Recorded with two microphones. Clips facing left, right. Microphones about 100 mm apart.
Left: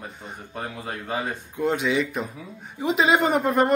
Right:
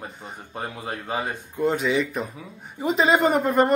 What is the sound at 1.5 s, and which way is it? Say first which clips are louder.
A man's voice: right 1 dB; centre (ahead or behind).